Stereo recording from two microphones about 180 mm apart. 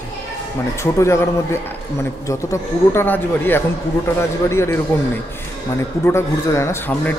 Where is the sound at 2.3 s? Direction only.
15° left (ahead or behind).